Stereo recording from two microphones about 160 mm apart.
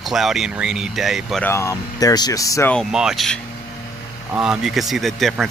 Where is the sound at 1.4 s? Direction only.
15° left (ahead or behind).